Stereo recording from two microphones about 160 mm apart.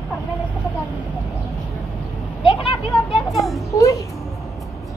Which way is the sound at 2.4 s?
35° left (ahead or behind).